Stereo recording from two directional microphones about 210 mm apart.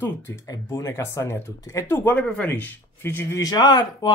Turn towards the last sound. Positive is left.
turn(degrees=20)  # may be behind; listen again after turning